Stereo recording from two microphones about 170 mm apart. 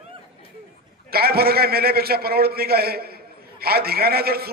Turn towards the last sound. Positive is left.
turn(degrees=-65)  # may be behind; listen again after turning